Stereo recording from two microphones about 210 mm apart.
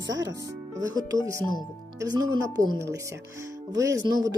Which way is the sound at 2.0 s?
15° right (ahead or behind).